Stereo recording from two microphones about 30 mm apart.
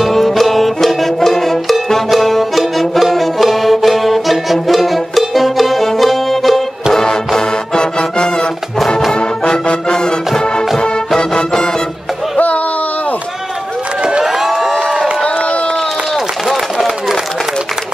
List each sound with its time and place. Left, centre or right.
0.0 s music: centre
6.9 s music: centre
9.5 s brass instrument: left
11.1 s music: left
14.2 s vehicle: centre
16.4 s run: centre